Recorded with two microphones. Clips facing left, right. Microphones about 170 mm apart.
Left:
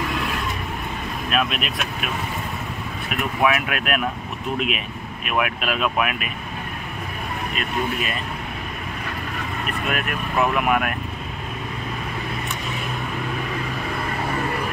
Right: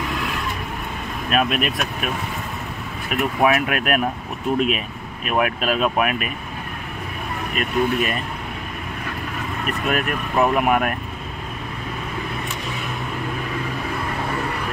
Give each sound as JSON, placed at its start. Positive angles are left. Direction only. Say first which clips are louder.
{"t": 1.3, "sound": "speech", "louder": "right 4 dB", "side_deg": -45}
{"t": 3.4, "sound": "speech", "louder": "right 2 dB", "side_deg": -45}
{"t": 7.5, "sound": "speech", "louder": "right 6 dB", "side_deg": -45}
{"t": 9.8, "sound": "speech", "louder": "right 4 dB", "side_deg": -40}